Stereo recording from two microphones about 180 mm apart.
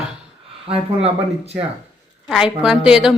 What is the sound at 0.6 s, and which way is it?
Speech, 30° right (ahead or behind).